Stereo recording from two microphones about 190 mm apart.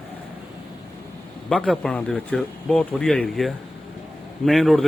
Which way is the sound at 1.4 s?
5° left (ahead or behind).